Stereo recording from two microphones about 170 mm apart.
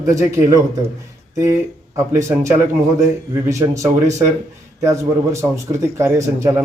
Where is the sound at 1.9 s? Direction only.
15° right (ahead or behind).